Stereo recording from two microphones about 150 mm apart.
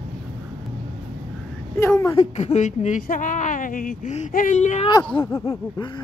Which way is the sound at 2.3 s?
50° left (ahead or behind).